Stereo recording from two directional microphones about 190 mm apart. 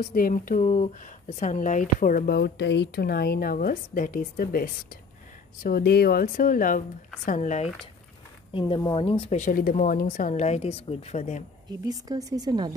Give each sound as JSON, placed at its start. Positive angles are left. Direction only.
{"t": 0.0, "sound": "a woman's voice", "side_deg": 45}
{"t": 8.5, "sound": "a woman's voice", "side_deg": 25}
{"t": 11.7, "sound": "a woman's voice", "side_deg": -20}